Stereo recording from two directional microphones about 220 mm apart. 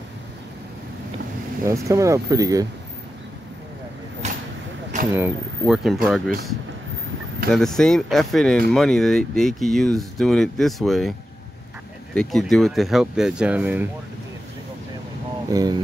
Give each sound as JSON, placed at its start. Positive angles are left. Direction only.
{"t": 1.7, "sound": "speech", "side_deg": -15}
{"t": 4.2, "sound": "vehicle", "side_deg": -30}
{"t": 5.1, "sound": "speech", "side_deg": -5}
{"t": 7.5, "sound": "speech", "side_deg": 0}
{"t": 15.5, "sound": "speech", "side_deg": -15}